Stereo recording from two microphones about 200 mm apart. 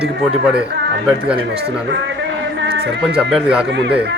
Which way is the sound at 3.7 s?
60° right (ahead or behind).